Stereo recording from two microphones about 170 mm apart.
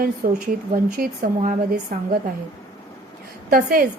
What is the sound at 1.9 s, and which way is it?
Speech, 55° right (ahead or behind).